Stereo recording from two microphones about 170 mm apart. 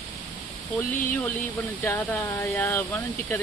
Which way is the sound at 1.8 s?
15° left (ahead or behind).